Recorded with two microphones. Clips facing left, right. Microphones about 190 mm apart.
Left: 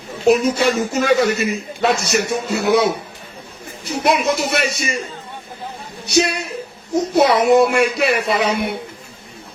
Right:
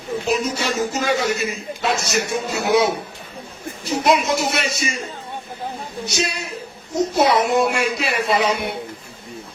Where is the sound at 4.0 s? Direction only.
60° left (ahead or behind).